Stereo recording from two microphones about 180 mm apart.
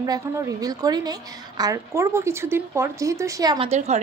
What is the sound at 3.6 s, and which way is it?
Speech, 40° right (ahead or behind).